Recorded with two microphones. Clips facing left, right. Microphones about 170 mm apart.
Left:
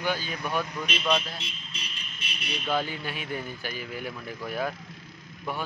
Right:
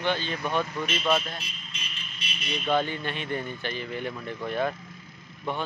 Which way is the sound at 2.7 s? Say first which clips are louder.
Right 3 dB; 5° left (ahead or behind).